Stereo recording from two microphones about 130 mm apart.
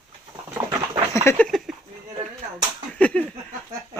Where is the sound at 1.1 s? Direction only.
20° left (ahead or behind).